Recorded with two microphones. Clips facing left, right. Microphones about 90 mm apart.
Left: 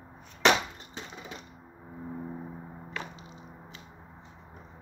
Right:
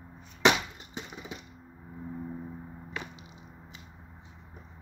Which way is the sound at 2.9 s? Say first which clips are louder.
Left 1 dB; 15° right (ahead or behind).